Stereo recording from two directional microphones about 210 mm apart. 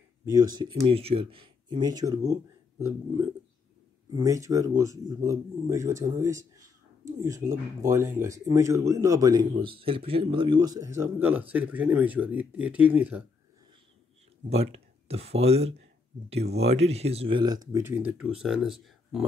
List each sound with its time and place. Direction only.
0.2 s speech: 15° right (ahead or behind)
4.1 s speech: 15° right (ahead or behind)
14.5 s speech: 30° right (ahead or behind)
17.7 s speech: 10° right (ahead or behind)